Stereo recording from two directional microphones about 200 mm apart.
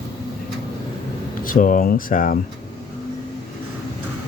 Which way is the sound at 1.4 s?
40° left (ahead or behind).